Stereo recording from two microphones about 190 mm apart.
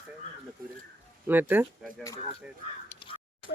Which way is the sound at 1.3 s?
10° right (ahead or behind).